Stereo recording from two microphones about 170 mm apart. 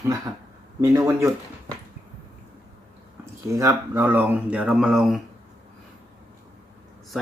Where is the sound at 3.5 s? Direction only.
20° right (ahead or behind); by 5.2 s 5° right (ahead or behind).